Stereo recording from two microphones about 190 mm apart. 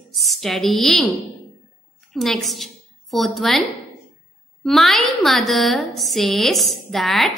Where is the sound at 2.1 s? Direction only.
Centre (ahead or behind).